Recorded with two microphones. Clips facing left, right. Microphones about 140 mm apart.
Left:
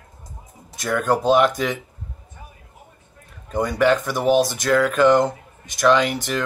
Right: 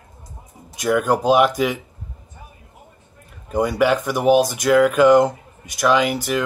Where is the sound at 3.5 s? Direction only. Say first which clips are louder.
Right 1 dB; 10° right (ahead or behind).